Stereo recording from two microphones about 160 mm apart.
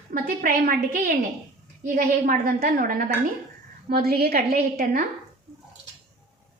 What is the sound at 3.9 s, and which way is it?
A woman's voice, 70° right (ahead or behind).